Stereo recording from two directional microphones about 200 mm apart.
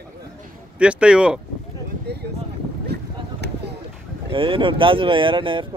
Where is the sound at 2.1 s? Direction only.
55° right (ahead or behind).